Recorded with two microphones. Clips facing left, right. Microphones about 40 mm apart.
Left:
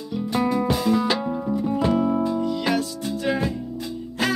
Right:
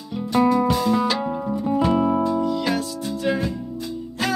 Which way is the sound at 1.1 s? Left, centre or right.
Centre.